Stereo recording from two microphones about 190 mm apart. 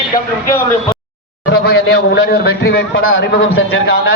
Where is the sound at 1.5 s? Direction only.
60° left (ahead or behind); by 3.8 s 90° left.